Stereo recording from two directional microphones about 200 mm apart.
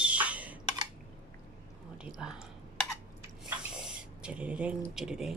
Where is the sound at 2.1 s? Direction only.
Centre (ahead or behind).